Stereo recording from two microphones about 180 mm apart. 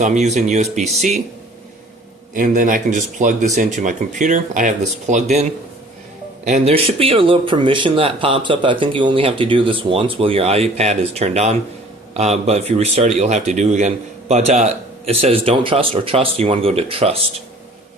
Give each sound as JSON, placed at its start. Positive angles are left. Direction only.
{"t": 0.0, "sound": "a man's voice", "side_deg": -40}
{"t": 2.3, "sound": "a man's voice", "side_deg": -45}